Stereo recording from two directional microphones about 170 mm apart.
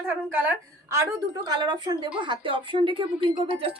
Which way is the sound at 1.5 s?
25° right (ahead or behind).